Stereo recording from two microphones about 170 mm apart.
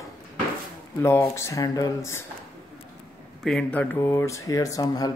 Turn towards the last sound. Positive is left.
turn(degrees=25)  # may be behind; listen again after turning